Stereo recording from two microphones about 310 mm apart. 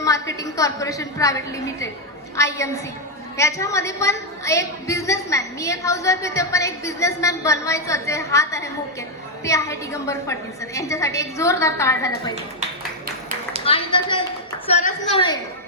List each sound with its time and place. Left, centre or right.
0.0 s a woman's voice: centre
13.7 s a woman's voice: centre